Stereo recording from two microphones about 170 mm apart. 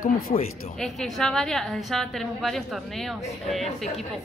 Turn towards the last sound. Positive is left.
turn(degrees=0)  # may be behind; listen again after turning